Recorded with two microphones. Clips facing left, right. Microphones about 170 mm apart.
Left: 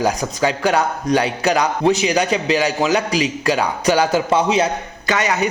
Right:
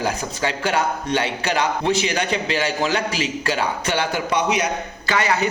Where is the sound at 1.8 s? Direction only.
35° left (ahead or behind).